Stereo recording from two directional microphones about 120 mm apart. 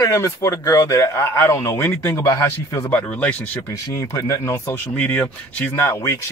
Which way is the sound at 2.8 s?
10° left (ahead or behind).